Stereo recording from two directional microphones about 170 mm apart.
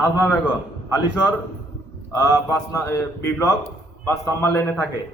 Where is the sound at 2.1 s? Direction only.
20° left (ahead or behind).